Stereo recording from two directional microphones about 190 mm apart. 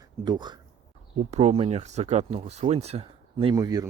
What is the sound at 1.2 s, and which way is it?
Speech, 35° right (ahead or behind).